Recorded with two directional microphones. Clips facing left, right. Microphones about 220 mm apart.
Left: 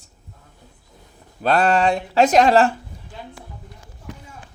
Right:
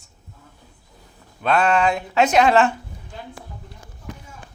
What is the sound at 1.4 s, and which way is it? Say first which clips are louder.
Speech: left 1 dB; 35° left (ahead or behind).